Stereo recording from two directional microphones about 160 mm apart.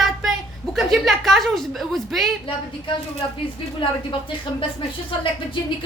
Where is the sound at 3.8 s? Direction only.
30° left (ahead or behind).